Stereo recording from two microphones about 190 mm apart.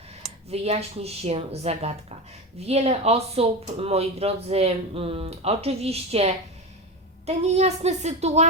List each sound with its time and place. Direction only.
0.5 s speech: 35° right (ahead or behind)